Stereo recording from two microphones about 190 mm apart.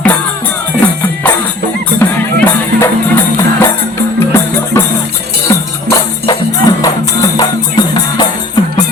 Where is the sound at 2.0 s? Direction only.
10° left (ahead or behind).